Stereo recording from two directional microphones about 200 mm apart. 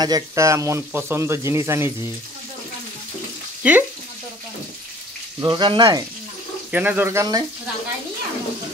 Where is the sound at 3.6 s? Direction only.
5° right (ahead or behind).